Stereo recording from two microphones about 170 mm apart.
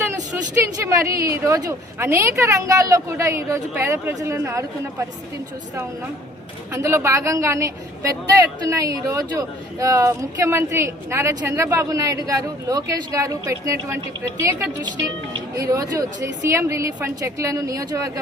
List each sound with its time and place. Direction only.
0.9 s speech: 20° right (ahead or behind)
6.7 s speech: 15° right (ahead or behind)
14.8 s speech: 25° right (ahead or behind)